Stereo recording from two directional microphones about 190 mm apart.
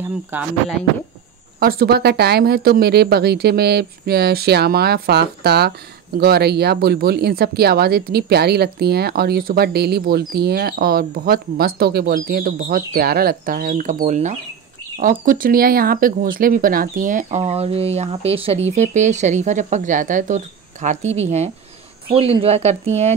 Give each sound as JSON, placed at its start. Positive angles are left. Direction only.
{"t": 1.6, "sound": "speech", "side_deg": -50}